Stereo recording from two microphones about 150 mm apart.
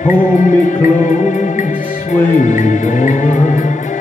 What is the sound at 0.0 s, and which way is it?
Music, 60° left (ahead or behind).